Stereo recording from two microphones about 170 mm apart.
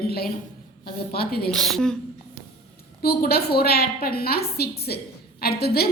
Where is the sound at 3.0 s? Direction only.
65° left (ahead or behind).